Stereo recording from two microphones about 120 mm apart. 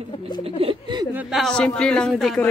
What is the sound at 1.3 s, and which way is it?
Speech, 5° left (ahead or behind).